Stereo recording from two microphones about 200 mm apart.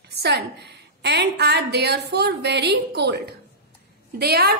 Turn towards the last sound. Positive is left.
turn(degrees=-50)  # may be behind; listen again after turning